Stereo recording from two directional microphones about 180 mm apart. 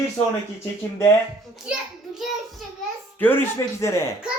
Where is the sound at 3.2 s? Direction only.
15° left (ahead or behind).